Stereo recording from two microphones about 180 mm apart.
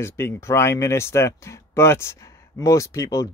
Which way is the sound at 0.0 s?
15° left (ahead or behind).